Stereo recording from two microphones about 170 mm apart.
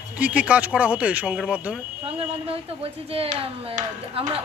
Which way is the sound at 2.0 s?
35° right (ahead or behind).